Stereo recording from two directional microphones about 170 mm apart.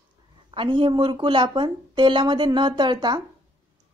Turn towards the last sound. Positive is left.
turn(degrees=-25)  # may be behind; listen again after turning